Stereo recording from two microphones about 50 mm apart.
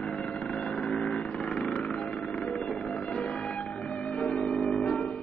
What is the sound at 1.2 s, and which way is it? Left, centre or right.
Music, centre.